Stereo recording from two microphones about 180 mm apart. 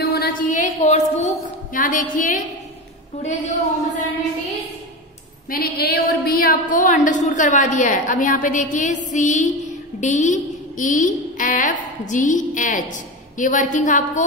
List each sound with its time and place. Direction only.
0.0 s a sound: 60° left (ahead or behind)
3.2 s a woman's voice: 40° left (ahead or behind)
5.5 s a woman's voice: 60° left (ahead or behind); by 14.2 s 45° left (ahead or behind)